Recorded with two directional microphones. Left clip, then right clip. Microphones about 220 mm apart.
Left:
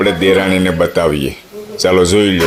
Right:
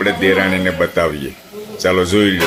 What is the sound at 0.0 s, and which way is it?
Speech, 40° left (ahead or behind).